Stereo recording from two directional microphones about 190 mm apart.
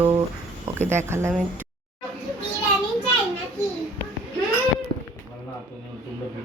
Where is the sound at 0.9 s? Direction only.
15° right (ahead or behind).